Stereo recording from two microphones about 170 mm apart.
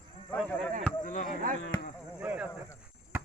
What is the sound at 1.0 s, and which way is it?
Speech, 50° left (ahead or behind).